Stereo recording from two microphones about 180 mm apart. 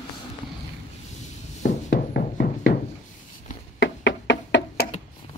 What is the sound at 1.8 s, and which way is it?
Music, 55° left (ahead or behind).